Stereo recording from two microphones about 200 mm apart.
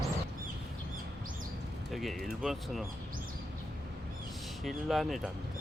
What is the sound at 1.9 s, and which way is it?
Speech, centre (ahead or behind).